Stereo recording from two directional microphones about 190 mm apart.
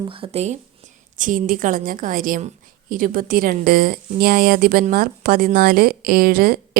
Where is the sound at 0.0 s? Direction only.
30° right (ahead or behind).